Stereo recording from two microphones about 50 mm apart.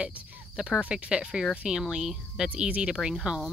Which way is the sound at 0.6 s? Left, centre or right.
Centre.